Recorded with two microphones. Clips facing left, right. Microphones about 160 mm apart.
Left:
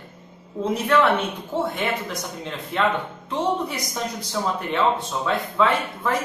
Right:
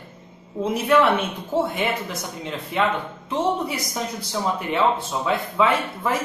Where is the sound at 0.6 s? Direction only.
25° right (ahead or behind).